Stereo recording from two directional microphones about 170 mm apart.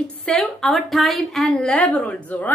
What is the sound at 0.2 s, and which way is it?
A woman's voice, 5° left (ahead or behind).